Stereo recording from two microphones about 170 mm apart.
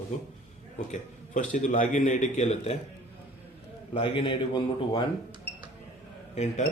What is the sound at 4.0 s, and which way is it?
Speech, 30° left (ahead or behind).